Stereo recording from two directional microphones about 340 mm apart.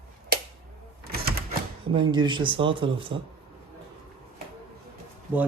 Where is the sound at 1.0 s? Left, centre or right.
Right.